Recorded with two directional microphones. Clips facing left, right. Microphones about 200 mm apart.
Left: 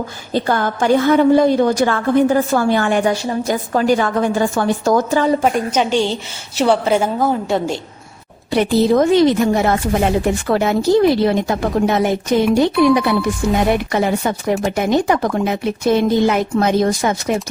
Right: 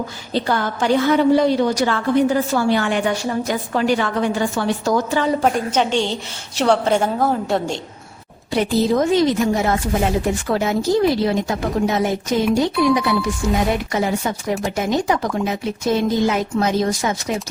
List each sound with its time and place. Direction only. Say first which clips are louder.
0.3 s a woman's voice: left 3 dB; 50° left (ahead or behind)
3.0 s a woman's voice: left 3 dB; 30° left (ahead or behind)
3.4 s a woman's voice: left 6 dB; 40° left (ahead or behind)
5.4 s a woman's voice: left 2 dB; 5° left (ahead or behind)
8.5 s speech: left 4 dB; 65° left (ahead or behind)